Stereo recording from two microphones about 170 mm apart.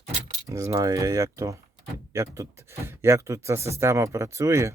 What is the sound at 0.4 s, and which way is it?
Speech, 20° right (ahead or behind).